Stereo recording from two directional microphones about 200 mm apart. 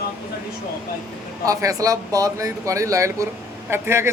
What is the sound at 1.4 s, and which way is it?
A man's voice, 15° right (ahead or behind).